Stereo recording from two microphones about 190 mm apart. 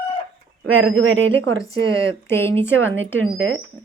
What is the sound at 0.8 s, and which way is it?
Speech, 90° right.